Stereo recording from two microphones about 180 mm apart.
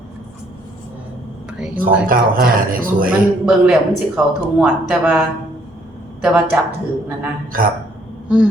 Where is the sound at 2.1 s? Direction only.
50° right (ahead or behind).